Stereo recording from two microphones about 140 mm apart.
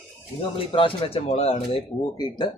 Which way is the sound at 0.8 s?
40° left (ahead or behind).